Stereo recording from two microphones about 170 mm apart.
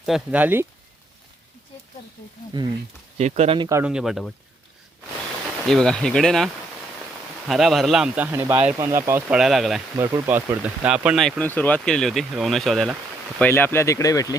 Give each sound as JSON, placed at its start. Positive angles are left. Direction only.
{"t": 0.0, "sound": "speech", "side_deg": -5}
{"t": 2.5, "sound": "speech", "side_deg": -25}
{"t": 3.2, "sound": "speech", "side_deg": -40}
{"t": 3.8, "sound": "speech", "side_deg": -5}
{"t": 5.6, "sound": "speech", "side_deg": 5}
{"t": 9.4, "sound": "speech", "side_deg": 0}
{"t": 13.4, "sound": "speech", "side_deg": 10}